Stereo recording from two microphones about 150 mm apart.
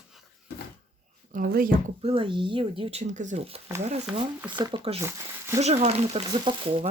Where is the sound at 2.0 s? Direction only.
35° right (ahead or behind); by 3.4 s 55° right (ahead or behind).